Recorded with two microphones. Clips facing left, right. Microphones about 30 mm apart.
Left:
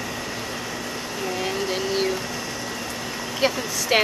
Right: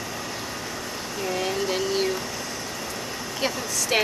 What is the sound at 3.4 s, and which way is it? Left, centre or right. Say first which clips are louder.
Speech: left 4 dB; centre.